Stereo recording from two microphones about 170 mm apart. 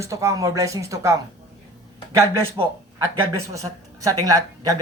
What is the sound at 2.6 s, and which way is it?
Speech, 30° right (ahead or behind).